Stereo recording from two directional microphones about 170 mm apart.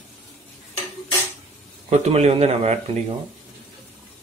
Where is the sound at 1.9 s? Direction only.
40° right (ahead or behind).